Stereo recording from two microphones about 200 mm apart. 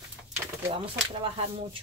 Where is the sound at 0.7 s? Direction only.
30° right (ahead or behind).